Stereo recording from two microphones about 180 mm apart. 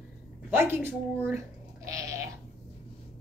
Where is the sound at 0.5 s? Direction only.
15° right (ahead or behind).